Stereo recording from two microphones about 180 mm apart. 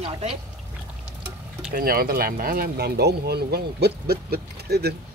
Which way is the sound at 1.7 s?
55° right (ahead or behind).